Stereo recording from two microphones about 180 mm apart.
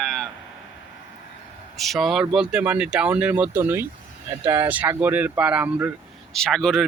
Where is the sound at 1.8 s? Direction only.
Centre (ahead or behind).